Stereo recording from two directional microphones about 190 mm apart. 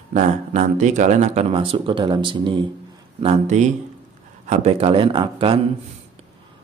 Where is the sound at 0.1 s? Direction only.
40° right (ahead or behind).